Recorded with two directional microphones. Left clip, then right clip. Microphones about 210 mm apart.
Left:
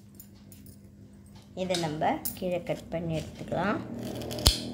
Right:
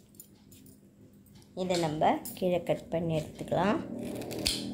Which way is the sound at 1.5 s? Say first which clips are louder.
Even; 15° right (ahead or behind).